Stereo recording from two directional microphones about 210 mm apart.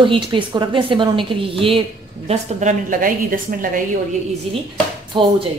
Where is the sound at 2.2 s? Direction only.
35° right (ahead or behind).